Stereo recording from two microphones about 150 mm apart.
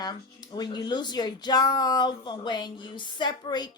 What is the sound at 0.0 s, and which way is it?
Speech, 30° left (ahead or behind).